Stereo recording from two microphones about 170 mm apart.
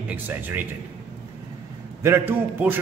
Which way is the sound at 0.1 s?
10° right (ahead or behind).